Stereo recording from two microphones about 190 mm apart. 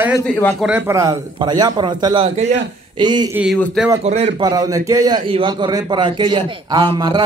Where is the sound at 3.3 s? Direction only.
5° right (ahead or behind).